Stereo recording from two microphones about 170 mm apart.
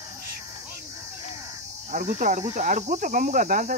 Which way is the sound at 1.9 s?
45° right (ahead or behind).